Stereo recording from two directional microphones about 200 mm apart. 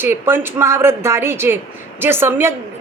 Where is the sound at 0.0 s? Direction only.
10° right (ahead or behind).